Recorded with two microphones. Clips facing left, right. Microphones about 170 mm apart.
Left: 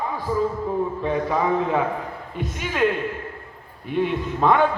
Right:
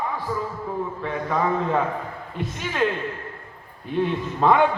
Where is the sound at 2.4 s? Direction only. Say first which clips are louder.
Left 2 dB; 5° left (ahead or behind).